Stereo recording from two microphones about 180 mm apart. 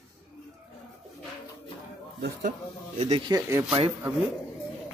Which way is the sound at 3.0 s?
30° right (ahead or behind).